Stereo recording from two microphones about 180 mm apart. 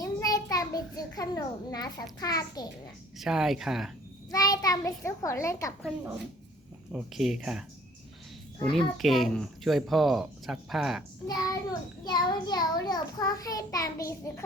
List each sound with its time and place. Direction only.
0.0 s a child's voice: 20° left (ahead or behind)
3.2 s speech: centre (ahead or behind)
4.3 s a child's voice: 20° left (ahead or behind)
6.9 s speech: centre (ahead or behind)
8.7 s speech: centre (ahead or behind)
11.3 s a child's voice: 20° left (ahead or behind)